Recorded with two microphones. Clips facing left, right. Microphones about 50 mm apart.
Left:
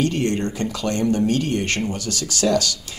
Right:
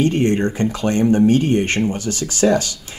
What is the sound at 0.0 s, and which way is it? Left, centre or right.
Speech, right.